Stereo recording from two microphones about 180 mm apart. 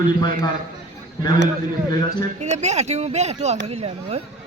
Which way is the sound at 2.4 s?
40° right (ahead or behind).